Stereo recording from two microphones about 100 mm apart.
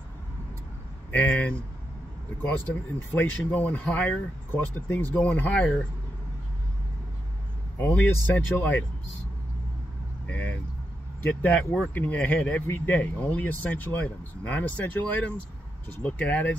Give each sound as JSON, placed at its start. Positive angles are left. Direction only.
{"t": 1.1, "sound": "speech", "side_deg": 15}
{"t": 7.8, "sound": "speech", "side_deg": 20}
{"t": 10.2, "sound": "vehicle", "side_deg": 20}
{"t": 11.2, "sound": "speech", "side_deg": 15}